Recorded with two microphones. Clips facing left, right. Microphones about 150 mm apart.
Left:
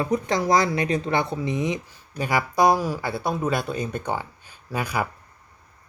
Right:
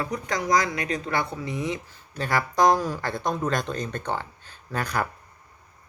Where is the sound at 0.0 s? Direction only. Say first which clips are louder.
Left 5 dB; 25° left (ahead or behind); by 5.0 s 10° left (ahead or behind).